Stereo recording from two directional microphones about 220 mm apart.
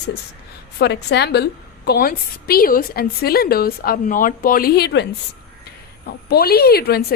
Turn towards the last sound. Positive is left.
turn(degrees=45)  # may be behind; listen again after turning